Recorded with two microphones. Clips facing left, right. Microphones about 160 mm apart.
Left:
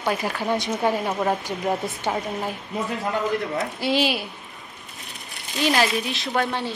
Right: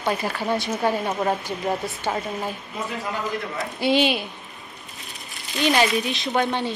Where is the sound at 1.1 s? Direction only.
Centre (ahead or behind).